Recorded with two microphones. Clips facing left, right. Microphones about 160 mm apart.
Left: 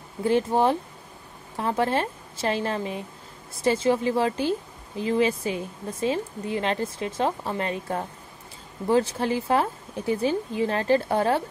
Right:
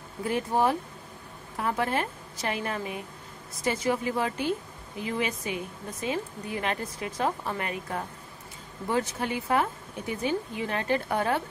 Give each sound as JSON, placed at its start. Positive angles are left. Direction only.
{"t": 0.2, "sound": "a woman's voice", "side_deg": 30}